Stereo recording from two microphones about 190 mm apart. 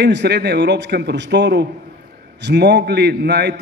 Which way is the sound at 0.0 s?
65° right (ahead or behind).